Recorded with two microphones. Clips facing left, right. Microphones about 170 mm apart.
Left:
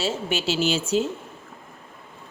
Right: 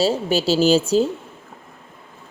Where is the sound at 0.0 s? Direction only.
35° right (ahead or behind).